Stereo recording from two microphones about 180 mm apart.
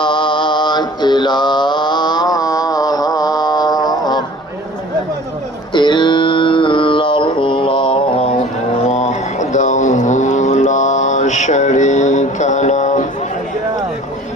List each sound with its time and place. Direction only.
0.0 s music: 25° left (ahead or behind)
5.7 s mantra: 25° left (ahead or behind)
8.9 s a sound: 40° left (ahead or behind)